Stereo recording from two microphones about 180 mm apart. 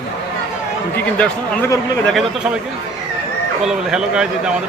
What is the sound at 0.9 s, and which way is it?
Speech, 10° left (ahead or behind).